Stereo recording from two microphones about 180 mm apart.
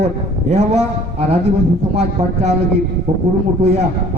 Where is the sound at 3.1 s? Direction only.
40° right (ahead or behind).